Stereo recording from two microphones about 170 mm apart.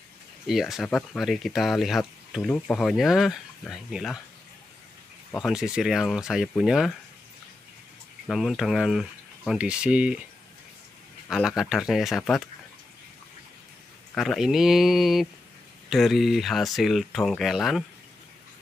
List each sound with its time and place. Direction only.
0.5 s speech: centre (ahead or behind)
5.4 s speech: 5° right (ahead or behind)
8.3 s speech: centre (ahead or behind)
11.2 s speech: centre (ahead or behind)
14.1 s speech: centre (ahead or behind)